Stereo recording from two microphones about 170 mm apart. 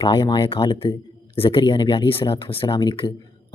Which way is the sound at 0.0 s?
30° left (ahead or behind).